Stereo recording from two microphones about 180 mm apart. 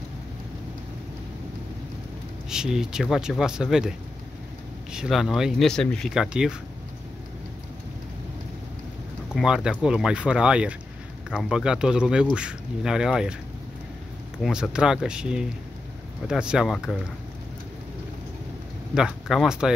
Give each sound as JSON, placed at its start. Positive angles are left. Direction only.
{"t": 2.5, "sound": "speech", "side_deg": -5}
{"t": 4.9, "sound": "speech", "side_deg": 0}
{"t": 9.3, "sound": "speech", "side_deg": -5}
{"t": 14.4, "sound": "speech", "side_deg": -5}
{"t": 18.9, "sound": "speech", "side_deg": 0}